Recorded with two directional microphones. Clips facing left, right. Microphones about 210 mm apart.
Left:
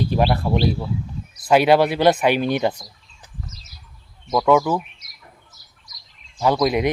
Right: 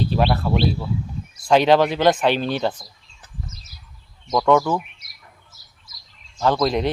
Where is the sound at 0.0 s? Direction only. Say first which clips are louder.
Left 1 dB; 10° left (ahead or behind).